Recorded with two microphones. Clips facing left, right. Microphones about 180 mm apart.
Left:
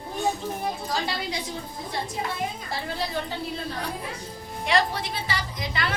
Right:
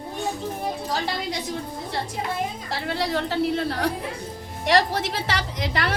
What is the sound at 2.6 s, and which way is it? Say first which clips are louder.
A woman's voice: right 4 dB; 75° right (ahead or behind).